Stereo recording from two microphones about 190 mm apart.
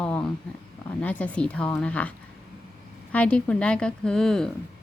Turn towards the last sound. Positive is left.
turn(degrees=5)  # may be behind; listen again after turning